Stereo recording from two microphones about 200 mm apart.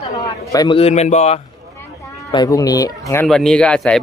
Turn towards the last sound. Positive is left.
turn(degrees=5)  # may be behind; listen again after turning